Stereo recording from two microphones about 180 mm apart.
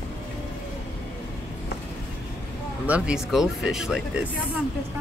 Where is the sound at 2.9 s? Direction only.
5° right (ahead or behind).